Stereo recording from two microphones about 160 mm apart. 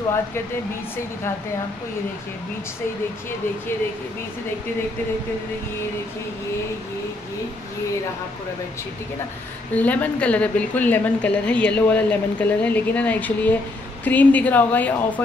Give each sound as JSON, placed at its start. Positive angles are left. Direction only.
{"t": 9.8, "sound": "a woman's voice", "side_deg": 10}